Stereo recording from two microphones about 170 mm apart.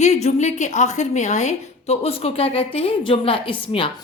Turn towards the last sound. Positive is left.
turn(degrees=30)  # may be behind; listen again after turning